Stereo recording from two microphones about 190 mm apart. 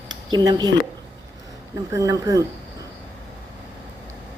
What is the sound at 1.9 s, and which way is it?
Speech, 20° right (ahead or behind).